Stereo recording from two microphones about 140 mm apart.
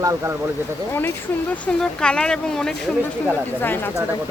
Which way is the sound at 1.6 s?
5° left (ahead or behind).